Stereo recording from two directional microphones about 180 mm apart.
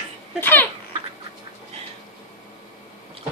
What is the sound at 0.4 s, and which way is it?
Speech, 10° left (ahead or behind).